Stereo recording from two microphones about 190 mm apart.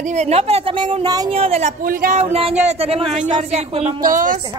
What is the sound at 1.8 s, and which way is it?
Speech, 50° right (ahead or behind).